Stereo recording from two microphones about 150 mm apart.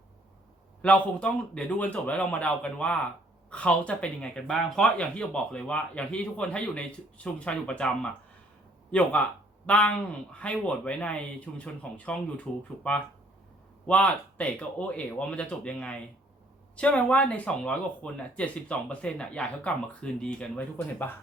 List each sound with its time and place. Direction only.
0.8 s speech: 5° left (ahead or behind)
13.8 s speech: 10° left (ahead or behind)